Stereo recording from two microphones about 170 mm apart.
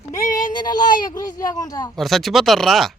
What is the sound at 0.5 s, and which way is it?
Speech, 25° left (ahead or behind).